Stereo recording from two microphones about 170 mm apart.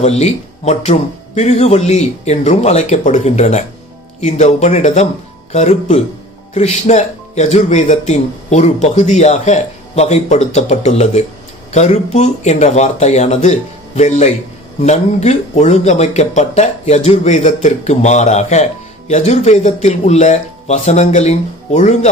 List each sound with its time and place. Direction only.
0.0 s speech: 40° left (ahead or behind)